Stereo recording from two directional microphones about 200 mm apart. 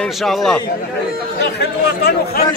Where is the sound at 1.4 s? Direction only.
55° left (ahead or behind).